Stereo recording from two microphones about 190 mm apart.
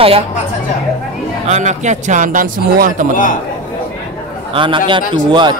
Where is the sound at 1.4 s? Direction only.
40° right (ahead or behind).